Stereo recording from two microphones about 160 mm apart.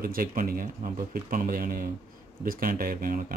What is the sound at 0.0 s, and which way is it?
Speech, 65° right (ahead or behind).